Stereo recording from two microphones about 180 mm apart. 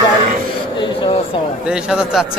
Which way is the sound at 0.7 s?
25° left (ahead or behind).